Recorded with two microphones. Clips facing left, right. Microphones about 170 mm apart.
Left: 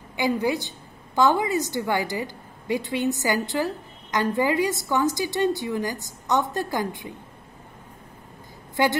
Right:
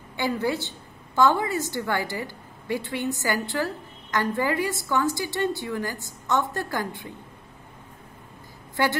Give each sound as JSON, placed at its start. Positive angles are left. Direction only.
{"t": 0.2, "sound": "a woman's voice", "side_deg": 15}
{"t": 8.8, "sound": "a woman's voice", "side_deg": 20}